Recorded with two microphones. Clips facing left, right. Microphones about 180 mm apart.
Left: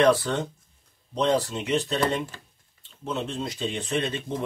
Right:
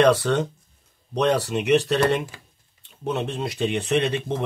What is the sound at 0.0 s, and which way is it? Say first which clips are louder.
Speech: right 3 dB; 75° right (ahead or behind).